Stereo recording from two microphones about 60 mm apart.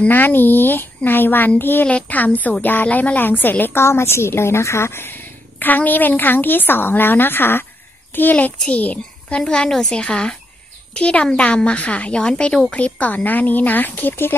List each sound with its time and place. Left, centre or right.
0.1 s a woman's voice: left
1.9 s a woman's voice: left
12.7 s speech: left